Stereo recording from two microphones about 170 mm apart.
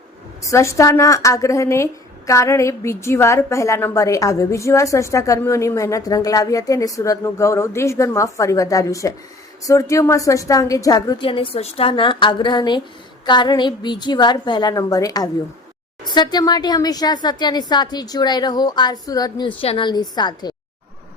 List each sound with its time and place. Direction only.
0.5 s a woman's voice: 15° left (ahead or behind)